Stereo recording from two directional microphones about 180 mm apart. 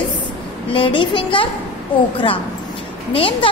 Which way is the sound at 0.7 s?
30° left (ahead or behind).